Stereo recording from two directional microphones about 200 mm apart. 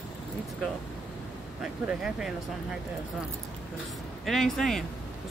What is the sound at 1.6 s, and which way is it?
Speech, 5° right (ahead or behind).